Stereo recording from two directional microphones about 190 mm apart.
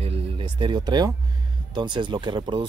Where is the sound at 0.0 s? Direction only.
30° right (ahead or behind).